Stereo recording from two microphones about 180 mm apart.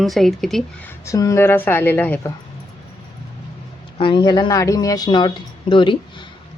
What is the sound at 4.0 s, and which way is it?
Speech, 25° left (ahead or behind).